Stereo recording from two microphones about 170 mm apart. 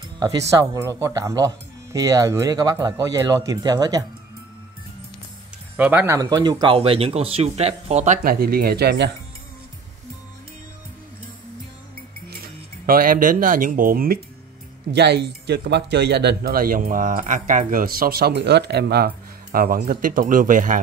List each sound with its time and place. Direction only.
0.2 s speech: 20° right (ahead or behind)
5.8 s speech: 10° right (ahead or behind); by 9.1 s 80° right
12.8 s speech: 60° right (ahead or behind)
14.9 s speech: 75° right (ahead or behind); by 20.8 s 50° right (ahead or behind)